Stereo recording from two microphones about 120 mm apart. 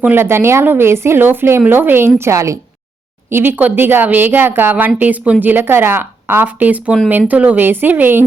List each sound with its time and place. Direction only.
0.0 s a woman's voice: 20° right (ahead or behind)